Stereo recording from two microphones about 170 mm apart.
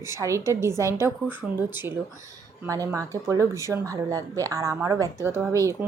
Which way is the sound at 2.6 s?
15° right (ahead or behind).